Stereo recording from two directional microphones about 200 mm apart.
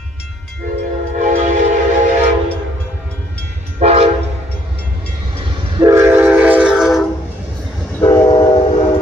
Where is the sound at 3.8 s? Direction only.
30° right (ahead or behind).